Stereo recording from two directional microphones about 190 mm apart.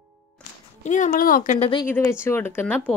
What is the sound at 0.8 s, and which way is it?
Speech, 40° left (ahead or behind).